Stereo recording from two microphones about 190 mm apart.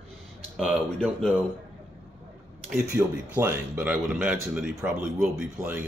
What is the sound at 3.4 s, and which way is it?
Speech, 10° right (ahead or behind).